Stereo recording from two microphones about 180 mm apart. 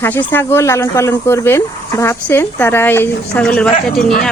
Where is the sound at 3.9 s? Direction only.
55° left (ahead or behind).